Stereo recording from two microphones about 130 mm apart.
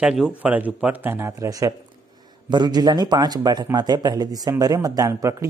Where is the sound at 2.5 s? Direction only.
35° right (ahead or behind).